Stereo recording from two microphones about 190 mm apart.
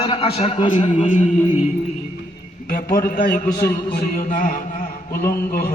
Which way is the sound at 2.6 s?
50° left (ahead or behind).